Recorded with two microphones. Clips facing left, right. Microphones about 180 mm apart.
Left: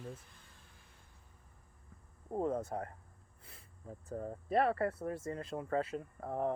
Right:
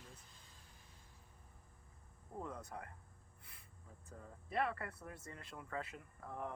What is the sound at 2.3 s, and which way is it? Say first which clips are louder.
Speech: left 12 dB; 45° left (ahead or behind).